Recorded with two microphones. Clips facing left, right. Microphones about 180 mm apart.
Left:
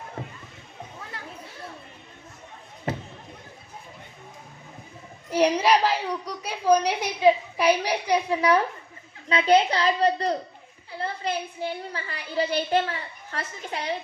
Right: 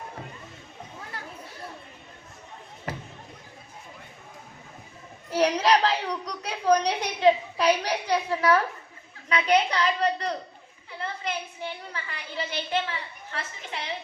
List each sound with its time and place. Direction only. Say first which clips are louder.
5.3 s a child's voice: left 2 dB; 10° left (ahead or behind)
9.3 s a woman's voice: left 3 dB; 30° left (ahead or behind)